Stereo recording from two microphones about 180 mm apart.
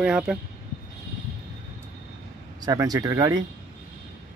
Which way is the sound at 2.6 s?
20° right (ahead or behind).